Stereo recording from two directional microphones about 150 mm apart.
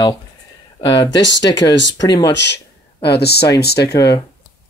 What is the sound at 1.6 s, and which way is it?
Speech, 25° left (ahead or behind).